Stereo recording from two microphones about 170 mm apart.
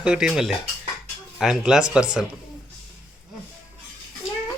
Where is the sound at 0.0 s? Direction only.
5° right (ahead or behind).